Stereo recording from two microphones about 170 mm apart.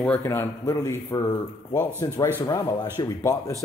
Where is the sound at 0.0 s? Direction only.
10° left (ahead or behind).